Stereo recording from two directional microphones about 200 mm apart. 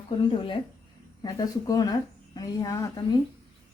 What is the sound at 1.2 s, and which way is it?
Speech, 20° left (ahead or behind).